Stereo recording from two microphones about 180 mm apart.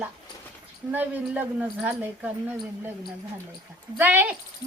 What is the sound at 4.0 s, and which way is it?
Speech, 10° right (ahead or behind).